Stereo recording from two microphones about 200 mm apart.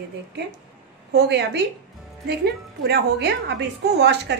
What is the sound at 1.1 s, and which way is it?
A woman's voice, 55° right (ahead or behind).